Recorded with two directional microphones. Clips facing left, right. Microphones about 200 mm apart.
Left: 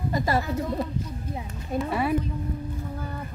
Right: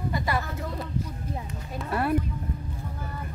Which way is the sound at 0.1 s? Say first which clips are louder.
Left 5 dB; 40° left (ahead or behind).